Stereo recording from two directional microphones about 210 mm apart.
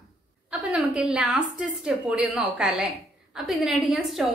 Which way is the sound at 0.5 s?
5° right (ahead or behind).